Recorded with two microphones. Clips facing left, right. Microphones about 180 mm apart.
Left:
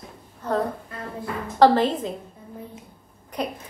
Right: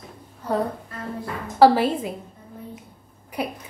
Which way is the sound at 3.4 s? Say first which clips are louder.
Even; 5° right (ahead or behind).